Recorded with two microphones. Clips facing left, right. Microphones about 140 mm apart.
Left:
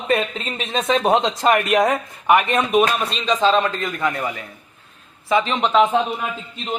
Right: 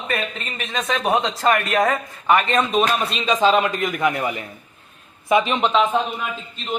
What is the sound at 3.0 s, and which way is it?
A man's voice, centre (ahead or behind).